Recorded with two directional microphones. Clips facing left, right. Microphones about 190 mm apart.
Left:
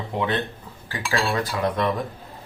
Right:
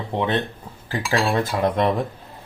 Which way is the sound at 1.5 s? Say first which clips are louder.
Right 3 dB; 40° right (ahead or behind).